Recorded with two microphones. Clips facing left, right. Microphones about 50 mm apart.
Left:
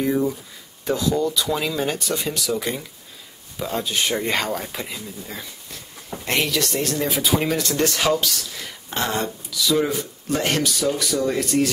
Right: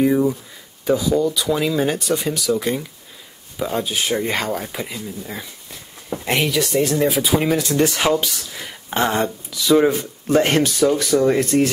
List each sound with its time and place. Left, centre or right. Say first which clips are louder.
0.0 s speech: right 5 dB; centre; by 11.7 s right